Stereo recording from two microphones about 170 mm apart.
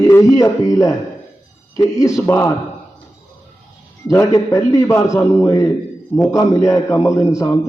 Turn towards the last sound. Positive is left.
turn(degrees=15)  # may be behind; listen again after turning